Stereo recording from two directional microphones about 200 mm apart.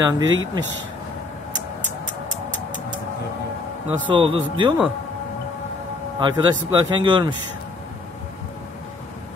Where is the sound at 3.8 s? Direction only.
25° right (ahead or behind).